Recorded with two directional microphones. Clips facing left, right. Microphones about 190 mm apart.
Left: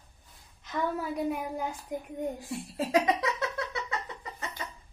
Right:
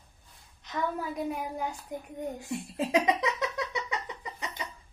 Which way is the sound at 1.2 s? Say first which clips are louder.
Left 1 dB; centre (ahead or behind).